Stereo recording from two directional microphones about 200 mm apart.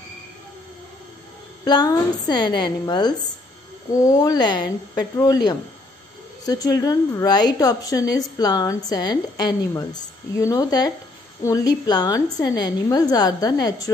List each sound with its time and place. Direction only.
1.6 s a woman's voice: 20° left (ahead or behind)